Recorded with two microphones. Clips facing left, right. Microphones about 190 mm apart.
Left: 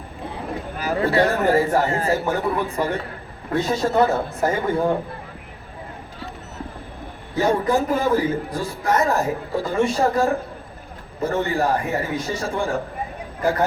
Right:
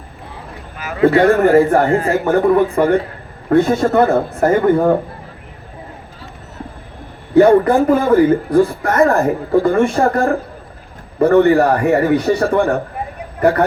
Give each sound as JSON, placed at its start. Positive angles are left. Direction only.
{"t": 0.8, "sound": "a sound", "side_deg": 35}
{"t": 1.1, "sound": "a man's voice", "side_deg": -55}
{"t": 7.3, "sound": "speech", "side_deg": -60}